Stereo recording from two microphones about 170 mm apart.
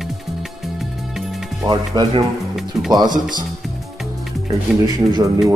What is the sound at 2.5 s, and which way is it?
Speech, centre (ahead or behind).